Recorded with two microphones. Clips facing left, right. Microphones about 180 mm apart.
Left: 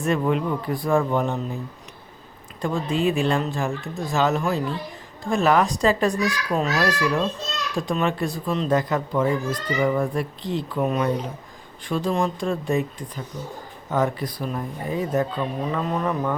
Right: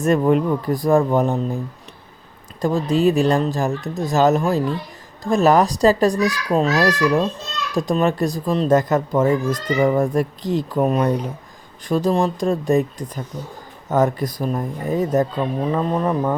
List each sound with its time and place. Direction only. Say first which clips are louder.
0.0 s speech: right 6 dB; 45° right (ahead or behind)
2.6 s speech: right 5 dB; 40° right (ahead or behind)